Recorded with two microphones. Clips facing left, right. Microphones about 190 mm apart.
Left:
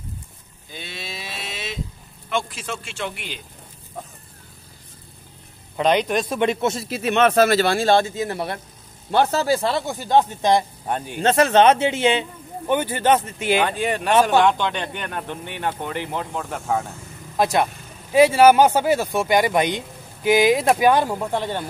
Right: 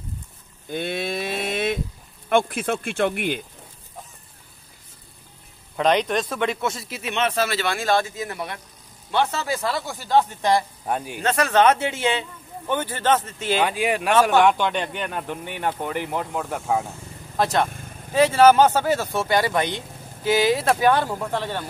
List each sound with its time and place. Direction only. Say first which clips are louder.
0.7 s a sound: right 10 dB; 55° right (ahead or behind)
2.2 s speech: right 6 dB; 55° right (ahead or behind)
5.8 s speech: left 1 dB; centre (ahead or behind); by 7.0 s 25° left (ahead or behind)
7.0 s a man's voice: left 7 dB; 45° left (ahead or behind); by 10.6 s 20° left (ahead or behind)
10.9 s speech: right 2 dB; 5° right (ahead or behind)
11.1 s a man's voice: left 4 dB; 25° left (ahead or behind)
13.7 s speech: even; 5° right (ahead or behind)
17.4 s speech: left 2 dB; 10° left (ahead or behind)